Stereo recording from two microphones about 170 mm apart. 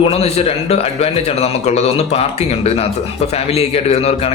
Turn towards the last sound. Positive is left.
turn(degrees=35)  # may be behind; listen again after turning